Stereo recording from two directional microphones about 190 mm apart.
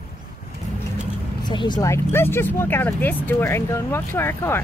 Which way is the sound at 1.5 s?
25° left (ahead or behind).